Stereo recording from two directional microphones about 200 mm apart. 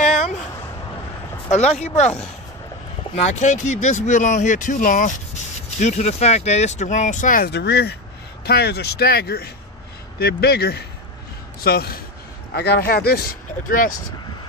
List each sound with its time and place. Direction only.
0.0 s a sound: 35° left (ahead or behind)
1.5 s speech: 35° left (ahead or behind)
3.2 s speech: 35° left (ahead or behind)